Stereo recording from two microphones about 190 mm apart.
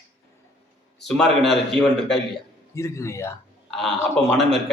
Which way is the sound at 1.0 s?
Centre (ahead or behind).